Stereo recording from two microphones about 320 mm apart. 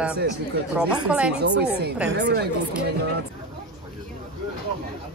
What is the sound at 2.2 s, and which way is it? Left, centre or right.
Speech, right.